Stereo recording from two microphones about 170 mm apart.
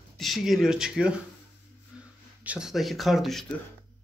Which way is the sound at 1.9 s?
5° right (ahead or behind).